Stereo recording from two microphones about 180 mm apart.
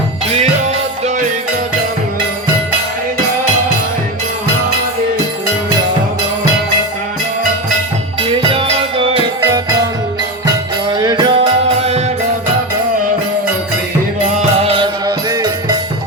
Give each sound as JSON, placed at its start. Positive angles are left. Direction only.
{"t": 8.2, "sound": "music", "side_deg": -30}
{"t": 9.4, "sound": "music", "side_deg": -20}
{"t": 14.6, "sound": "music", "side_deg": -30}